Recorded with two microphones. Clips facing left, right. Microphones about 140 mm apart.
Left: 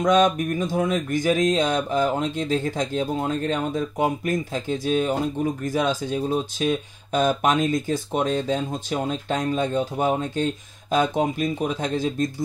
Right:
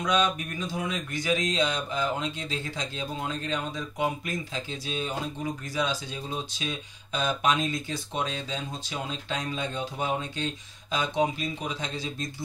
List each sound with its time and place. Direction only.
0.0 s speech: 45° left (ahead or behind)